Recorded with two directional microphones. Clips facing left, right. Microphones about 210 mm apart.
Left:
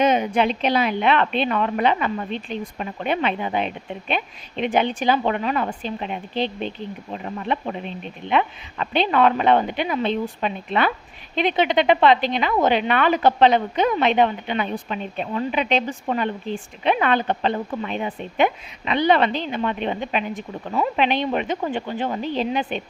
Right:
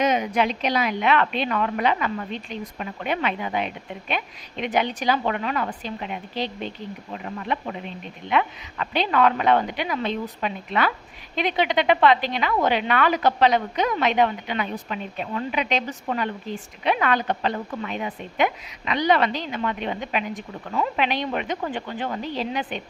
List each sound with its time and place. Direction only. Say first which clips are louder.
0.0 s a woman's voice: left 3 dB; 30° left (ahead or behind)